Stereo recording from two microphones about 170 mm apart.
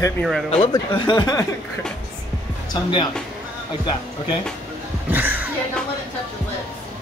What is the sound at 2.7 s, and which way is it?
Speech, 25° left (ahead or behind).